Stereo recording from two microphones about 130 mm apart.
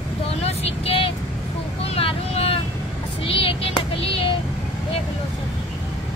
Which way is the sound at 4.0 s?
45° left (ahead or behind).